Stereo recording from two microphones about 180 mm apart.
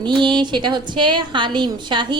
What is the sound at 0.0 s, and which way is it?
A woman's voice, 25° right (ahead or behind).